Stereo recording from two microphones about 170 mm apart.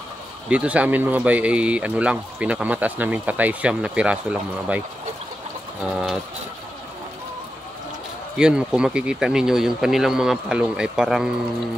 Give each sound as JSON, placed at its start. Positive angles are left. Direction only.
{"t": 0.5, "sound": "speech", "side_deg": -5}
{"t": 8.4, "sound": "speech", "side_deg": -5}